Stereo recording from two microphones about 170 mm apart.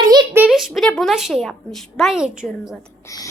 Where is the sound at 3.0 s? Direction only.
20° left (ahead or behind).